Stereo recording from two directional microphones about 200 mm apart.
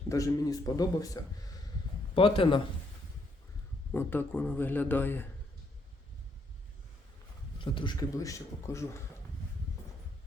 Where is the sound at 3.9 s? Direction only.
10° left (ahead or behind).